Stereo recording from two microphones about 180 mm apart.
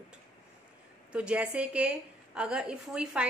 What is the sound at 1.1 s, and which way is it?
A woman's voice, 5° right (ahead or behind).